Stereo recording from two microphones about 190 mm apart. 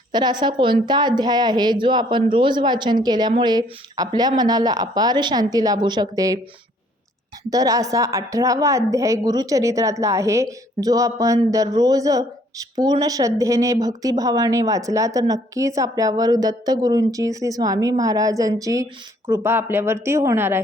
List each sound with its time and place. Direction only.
0.1 s a woman's voice: 20° right (ahead or behind)
7.5 s a woman's voice: 20° right (ahead or behind)